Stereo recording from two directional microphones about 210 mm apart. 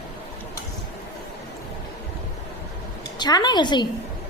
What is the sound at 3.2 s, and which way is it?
Speech, 20° left (ahead or behind).